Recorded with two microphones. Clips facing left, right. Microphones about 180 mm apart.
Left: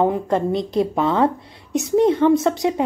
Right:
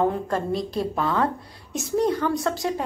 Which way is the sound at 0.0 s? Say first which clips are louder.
Left 5 dB; 20° left (ahead or behind).